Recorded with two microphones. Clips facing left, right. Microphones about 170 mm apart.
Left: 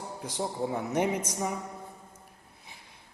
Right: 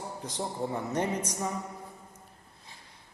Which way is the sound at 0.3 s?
5° left (ahead or behind).